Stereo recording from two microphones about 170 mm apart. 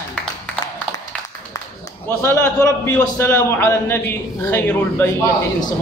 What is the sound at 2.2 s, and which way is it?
A man's voice, 15° left (ahead or behind).